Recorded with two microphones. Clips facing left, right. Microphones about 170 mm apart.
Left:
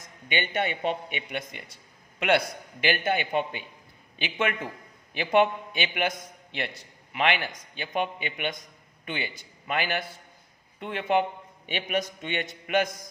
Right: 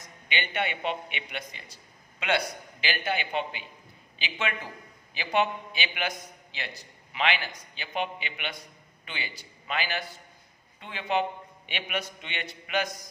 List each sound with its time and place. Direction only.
0.3 s a man's voice: 45° left (ahead or behind)
2.8 s a man's voice: 50° left (ahead or behind)